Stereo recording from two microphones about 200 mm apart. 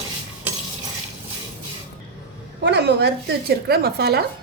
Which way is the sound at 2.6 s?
60° right (ahead or behind).